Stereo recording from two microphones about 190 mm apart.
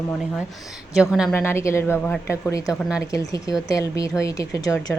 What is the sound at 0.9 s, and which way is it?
Speech, 5° right (ahead or behind).